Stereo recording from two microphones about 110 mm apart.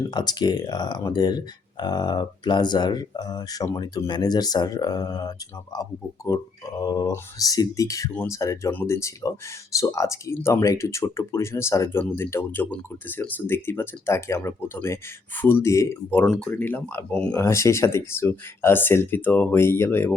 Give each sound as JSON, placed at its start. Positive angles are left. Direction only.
{"t": 0.1, "sound": "speech", "side_deg": 40}
{"t": 16.0, "sound": "speech", "side_deg": 15}
{"t": 17.3, "sound": "speech", "side_deg": 25}